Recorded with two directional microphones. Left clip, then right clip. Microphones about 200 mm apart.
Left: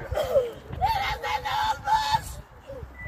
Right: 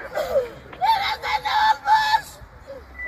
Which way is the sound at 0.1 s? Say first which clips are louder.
Right 1 dB; 15° left (ahead or behind).